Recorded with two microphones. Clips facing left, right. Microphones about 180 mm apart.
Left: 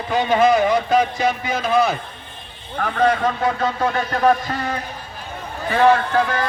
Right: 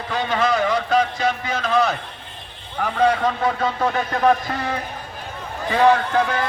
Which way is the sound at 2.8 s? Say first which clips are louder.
Even; 10° right (ahead or behind).